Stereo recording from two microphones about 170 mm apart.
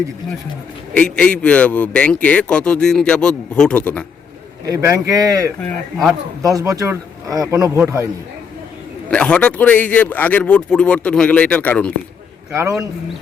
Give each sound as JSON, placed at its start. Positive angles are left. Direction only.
{"t": 0.9, "sound": "a man's voice", "side_deg": 5}
{"t": 4.6, "sound": "speech", "side_deg": -15}
{"t": 5.5, "sound": "a man's voice", "side_deg": 5}
{"t": 6.4, "sound": "speech", "side_deg": -20}
{"t": 9.0, "sound": "a man's voice", "side_deg": 5}
{"t": 12.5, "sound": "speech", "side_deg": -15}